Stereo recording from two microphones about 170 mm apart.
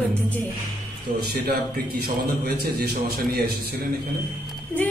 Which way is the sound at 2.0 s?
65° right (ahead or behind).